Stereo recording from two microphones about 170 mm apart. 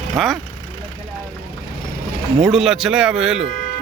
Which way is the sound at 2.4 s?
Centre (ahead or behind).